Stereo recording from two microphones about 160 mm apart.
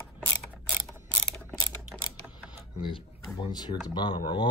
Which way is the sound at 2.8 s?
30° left (ahead or behind).